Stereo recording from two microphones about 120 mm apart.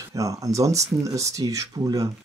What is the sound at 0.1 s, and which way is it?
Speech, 30° right (ahead or behind).